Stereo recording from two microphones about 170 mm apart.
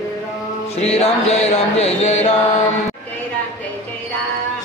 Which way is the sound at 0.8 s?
35° left (ahead or behind).